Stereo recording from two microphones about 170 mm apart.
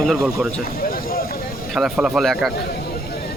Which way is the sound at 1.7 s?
Centre (ahead or behind).